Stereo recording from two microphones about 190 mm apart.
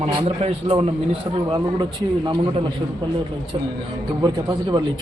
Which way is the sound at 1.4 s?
20° right (ahead or behind).